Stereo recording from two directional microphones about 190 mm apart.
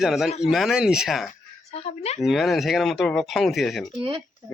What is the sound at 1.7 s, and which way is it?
Speech, 35° left (ahead or behind).